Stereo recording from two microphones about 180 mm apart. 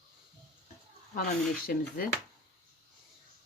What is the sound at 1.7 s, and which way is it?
Speech, 50° left (ahead or behind).